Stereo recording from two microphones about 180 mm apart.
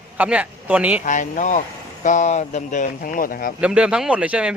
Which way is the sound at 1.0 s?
45° left (ahead or behind).